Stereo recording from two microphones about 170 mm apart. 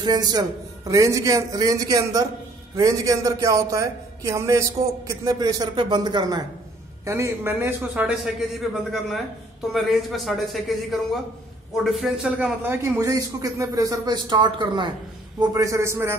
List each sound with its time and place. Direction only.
0.0 s a man's voice: 25° right (ahead or behind)